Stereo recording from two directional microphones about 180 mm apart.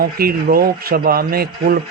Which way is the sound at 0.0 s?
55° right (ahead or behind).